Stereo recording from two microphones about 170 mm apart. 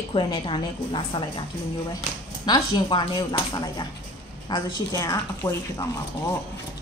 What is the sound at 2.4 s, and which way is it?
Speech, 25° left (ahead or behind).